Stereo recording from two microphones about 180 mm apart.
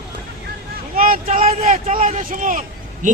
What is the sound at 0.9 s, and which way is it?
A man's voice, 50° right (ahead or behind).